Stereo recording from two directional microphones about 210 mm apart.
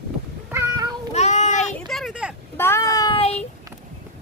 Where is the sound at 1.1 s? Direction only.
30° left (ahead or behind).